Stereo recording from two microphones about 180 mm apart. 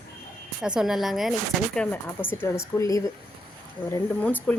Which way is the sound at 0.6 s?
5° right (ahead or behind).